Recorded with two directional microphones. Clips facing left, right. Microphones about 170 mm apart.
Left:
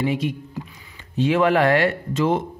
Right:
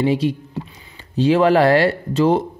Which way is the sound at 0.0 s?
30° right (ahead or behind).